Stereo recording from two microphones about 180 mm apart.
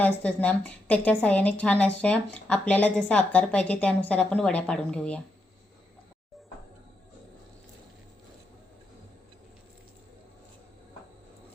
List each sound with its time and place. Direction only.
0.0 s speech: 10° left (ahead or behind)